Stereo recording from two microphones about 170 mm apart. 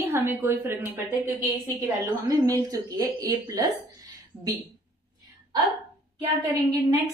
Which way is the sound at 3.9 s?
20° right (ahead or behind).